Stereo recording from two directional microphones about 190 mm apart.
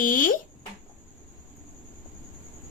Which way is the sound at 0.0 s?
45° left (ahead or behind).